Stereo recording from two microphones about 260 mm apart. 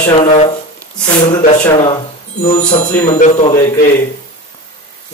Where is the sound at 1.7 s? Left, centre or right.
Left.